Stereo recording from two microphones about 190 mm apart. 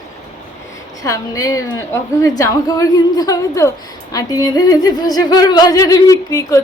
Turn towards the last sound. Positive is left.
turn(degrees=15)  # may be behind; listen again after turning